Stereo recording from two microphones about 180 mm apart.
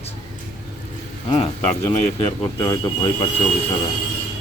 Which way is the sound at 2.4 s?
25° left (ahead or behind).